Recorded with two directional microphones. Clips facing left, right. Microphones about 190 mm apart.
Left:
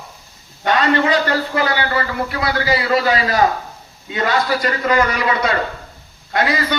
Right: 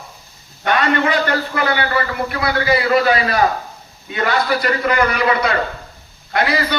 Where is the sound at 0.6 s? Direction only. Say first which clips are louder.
Left 1 dB; 25° left (ahead or behind).